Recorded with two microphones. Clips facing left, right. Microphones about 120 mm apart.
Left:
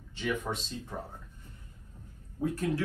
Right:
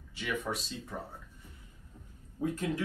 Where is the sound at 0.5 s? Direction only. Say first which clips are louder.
Left 1 dB; 15° left (ahead or behind).